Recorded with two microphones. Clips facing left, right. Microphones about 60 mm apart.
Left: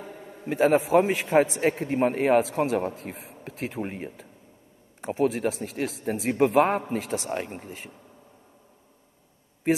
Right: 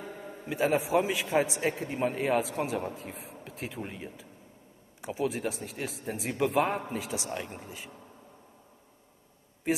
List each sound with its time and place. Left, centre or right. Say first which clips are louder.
0.5 s a man's voice: left 6 dB; left